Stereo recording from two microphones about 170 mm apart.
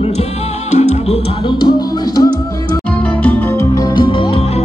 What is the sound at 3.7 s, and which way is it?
Music, 25° left (ahead or behind).